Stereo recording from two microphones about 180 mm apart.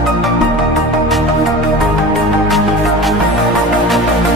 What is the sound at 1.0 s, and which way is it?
Music, centre (ahead or behind).